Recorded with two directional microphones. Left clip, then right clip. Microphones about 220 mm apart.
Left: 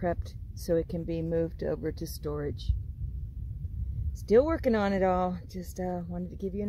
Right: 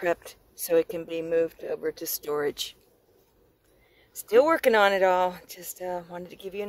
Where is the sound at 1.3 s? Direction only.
5° right (ahead or behind).